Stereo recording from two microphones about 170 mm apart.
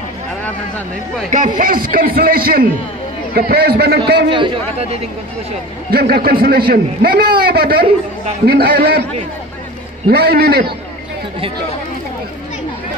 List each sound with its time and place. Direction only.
1.6 s a man's voice: 55° right (ahead or behind)
4.3 s a man's voice: 35° right (ahead or behind)
5.9 s a man's voice: 65° right (ahead or behind)
10.0 s a man's voice: 65° right (ahead or behind)